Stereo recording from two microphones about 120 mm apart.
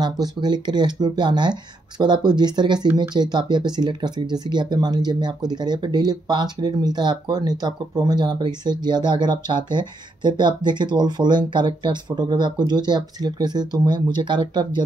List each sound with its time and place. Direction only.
0.0 s speech: 35° right (ahead or behind)